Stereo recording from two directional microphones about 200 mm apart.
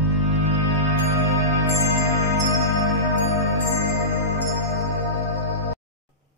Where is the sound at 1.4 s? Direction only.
15° right (ahead or behind).